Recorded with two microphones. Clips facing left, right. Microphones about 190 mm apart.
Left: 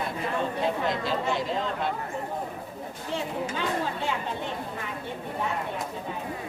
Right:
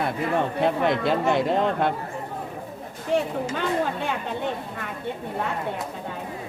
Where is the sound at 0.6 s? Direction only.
60° right (ahead or behind).